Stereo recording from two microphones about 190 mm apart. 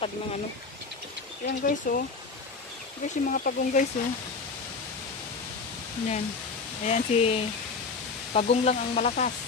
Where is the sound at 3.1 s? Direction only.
50° left (ahead or behind).